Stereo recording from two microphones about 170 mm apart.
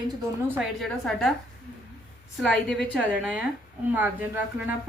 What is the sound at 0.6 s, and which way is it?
Speech, centre (ahead or behind).